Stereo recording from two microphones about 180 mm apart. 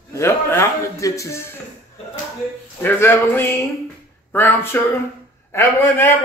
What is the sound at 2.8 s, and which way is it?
Speech, 10° left (ahead or behind).